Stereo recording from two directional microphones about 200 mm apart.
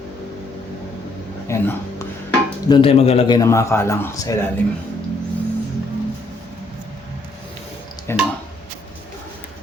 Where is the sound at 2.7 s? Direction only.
30° left (ahead or behind).